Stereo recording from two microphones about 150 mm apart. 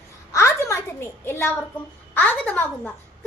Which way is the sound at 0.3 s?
15° left (ahead or behind).